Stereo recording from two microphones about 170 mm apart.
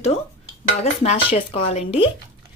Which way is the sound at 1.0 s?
40° left (ahead or behind).